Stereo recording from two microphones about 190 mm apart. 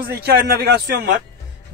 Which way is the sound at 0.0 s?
55° right (ahead or behind).